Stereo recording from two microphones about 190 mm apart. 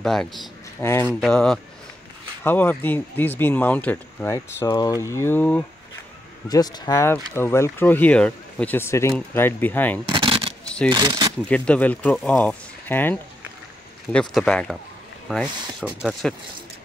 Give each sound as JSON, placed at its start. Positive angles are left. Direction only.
{"t": 0.0, "sound": "speech", "side_deg": 0}
{"t": 0.8, "sound": "speech", "side_deg": 15}
{"t": 10.0, "sound": "shuffling cards", "side_deg": -25}
{"t": 10.9, "sound": "speech", "side_deg": -25}
{"t": 11.4, "sound": "speech", "side_deg": 5}